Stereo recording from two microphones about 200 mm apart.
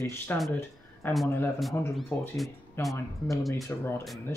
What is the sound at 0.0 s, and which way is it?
Speech, 15° left (ahead or behind).